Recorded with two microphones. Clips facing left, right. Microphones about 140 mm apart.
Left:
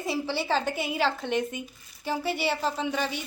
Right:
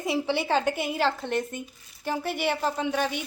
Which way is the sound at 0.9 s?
5° left (ahead or behind).